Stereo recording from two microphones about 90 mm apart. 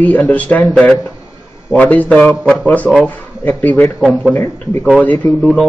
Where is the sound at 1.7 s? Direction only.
15° left (ahead or behind).